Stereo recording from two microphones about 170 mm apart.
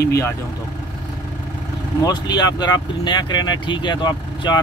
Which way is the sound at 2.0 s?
25° left (ahead or behind).